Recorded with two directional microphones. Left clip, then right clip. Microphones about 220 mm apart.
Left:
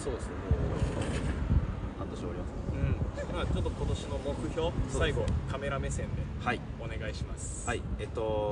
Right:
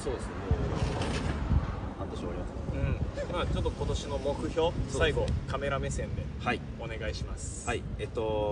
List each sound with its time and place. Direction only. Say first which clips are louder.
0.1 s music: right 1 dB; 25° right (ahead or behind)
2.8 s speech: right 2 dB; centre (ahead or behind)
7.6 s speech: right 1 dB; 5° left (ahead or behind)